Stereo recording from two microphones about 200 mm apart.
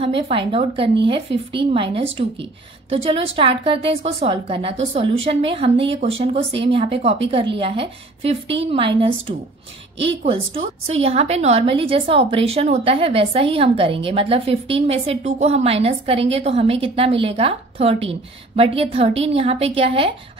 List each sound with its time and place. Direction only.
0.0 s a woman's voice: 30° right (ahead or behind)